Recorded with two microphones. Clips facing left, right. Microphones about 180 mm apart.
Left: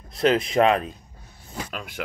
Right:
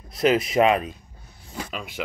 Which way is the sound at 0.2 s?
5° right (ahead or behind).